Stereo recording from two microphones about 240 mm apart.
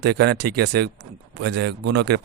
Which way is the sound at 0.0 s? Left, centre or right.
Right.